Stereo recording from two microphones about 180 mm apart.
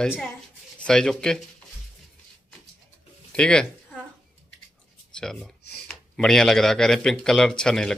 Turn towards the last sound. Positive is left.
turn(degrees=5)  # may be behind; listen again after turning